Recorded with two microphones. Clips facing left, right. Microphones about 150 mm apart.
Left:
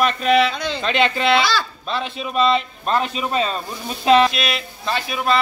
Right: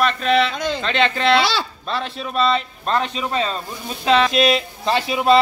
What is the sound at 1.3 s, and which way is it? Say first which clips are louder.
Speech: even; 25° right (ahead or behind).